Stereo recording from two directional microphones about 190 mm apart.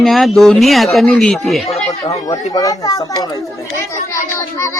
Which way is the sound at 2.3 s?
20° left (ahead or behind).